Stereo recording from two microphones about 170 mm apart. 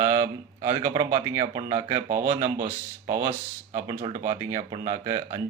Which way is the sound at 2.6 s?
50° right (ahead or behind).